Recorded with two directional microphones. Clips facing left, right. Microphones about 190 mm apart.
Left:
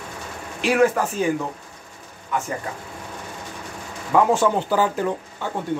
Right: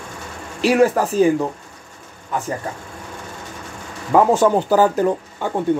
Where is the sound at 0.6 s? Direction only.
35° right (ahead or behind).